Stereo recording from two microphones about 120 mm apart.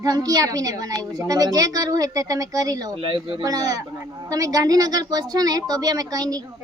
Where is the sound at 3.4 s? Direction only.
30° right (ahead or behind).